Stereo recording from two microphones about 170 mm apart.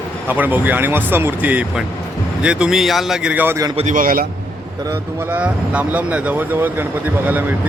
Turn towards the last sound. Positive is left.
turn(degrees=-10)  # may be behind; listen again after turning